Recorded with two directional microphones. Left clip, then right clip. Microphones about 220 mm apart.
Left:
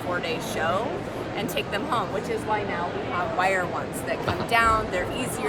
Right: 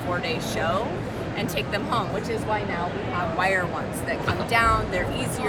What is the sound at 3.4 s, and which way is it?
Speech, 15° left (ahead or behind).